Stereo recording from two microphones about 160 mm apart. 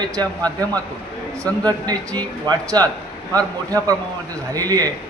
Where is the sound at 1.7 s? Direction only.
25° right (ahead or behind).